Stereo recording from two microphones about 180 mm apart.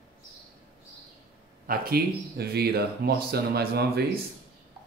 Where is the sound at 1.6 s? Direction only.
55° right (ahead or behind).